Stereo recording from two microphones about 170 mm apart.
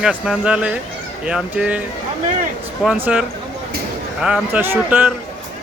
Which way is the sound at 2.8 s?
5° right (ahead or behind).